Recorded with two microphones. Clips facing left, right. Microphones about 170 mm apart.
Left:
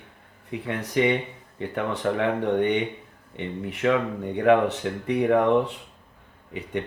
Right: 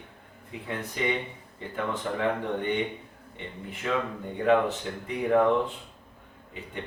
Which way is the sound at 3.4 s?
70° left (ahead or behind).